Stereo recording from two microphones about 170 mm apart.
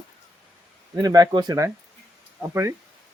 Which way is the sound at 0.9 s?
20° right (ahead or behind).